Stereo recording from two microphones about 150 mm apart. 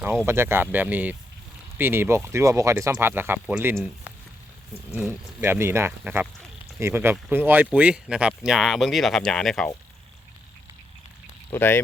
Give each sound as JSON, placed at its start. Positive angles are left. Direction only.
{"t": 0.3, "sound": "speech", "side_deg": -15}
{"t": 4.9, "sound": "speech", "side_deg": -15}
{"t": 11.5, "sound": "speech", "side_deg": 15}